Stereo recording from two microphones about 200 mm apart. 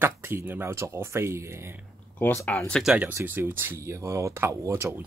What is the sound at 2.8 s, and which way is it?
Speech, 5° right (ahead or behind).